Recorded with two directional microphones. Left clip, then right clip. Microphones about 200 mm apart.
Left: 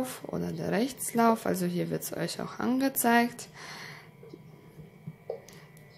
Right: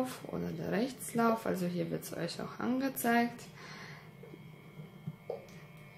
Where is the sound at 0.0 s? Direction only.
30° left (ahead or behind).